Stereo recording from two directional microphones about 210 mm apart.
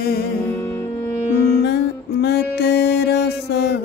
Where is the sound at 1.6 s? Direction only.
55° left (ahead or behind).